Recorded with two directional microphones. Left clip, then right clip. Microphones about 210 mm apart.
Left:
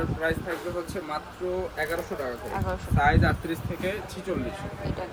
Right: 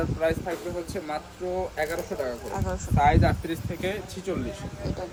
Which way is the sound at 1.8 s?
Centre (ahead or behind).